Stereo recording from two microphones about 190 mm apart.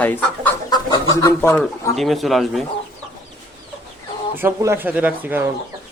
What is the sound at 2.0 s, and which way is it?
Speech, centre (ahead or behind).